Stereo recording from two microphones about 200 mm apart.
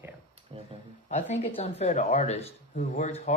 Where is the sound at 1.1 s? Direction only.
35° left (ahead or behind).